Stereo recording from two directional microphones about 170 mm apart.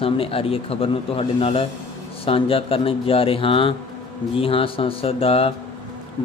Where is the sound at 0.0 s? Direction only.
35° left (ahead or behind).